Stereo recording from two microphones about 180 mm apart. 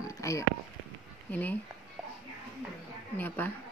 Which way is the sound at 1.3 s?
10° left (ahead or behind).